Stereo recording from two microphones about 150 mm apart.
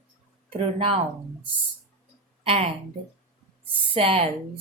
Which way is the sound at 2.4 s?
40° right (ahead or behind).